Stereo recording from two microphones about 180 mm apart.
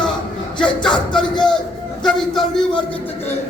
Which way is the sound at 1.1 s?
5° left (ahead or behind).